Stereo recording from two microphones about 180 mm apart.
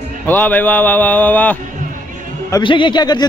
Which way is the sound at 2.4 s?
25° left (ahead or behind).